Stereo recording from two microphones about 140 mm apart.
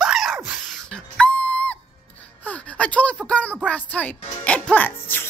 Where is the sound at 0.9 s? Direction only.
10° left (ahead or behind).